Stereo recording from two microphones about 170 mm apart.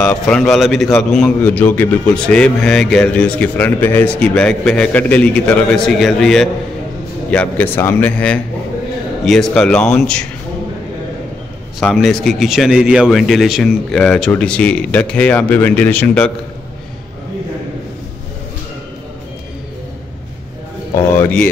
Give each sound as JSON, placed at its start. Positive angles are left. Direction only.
{"t": 0.0, "sound": "a man's voice", "side_deg": 5}
{"t": 11.8, "sound": "a man's voice", "side_deg": 0}
{"t": 21.2, "sound": "speech", "side_deg": 10}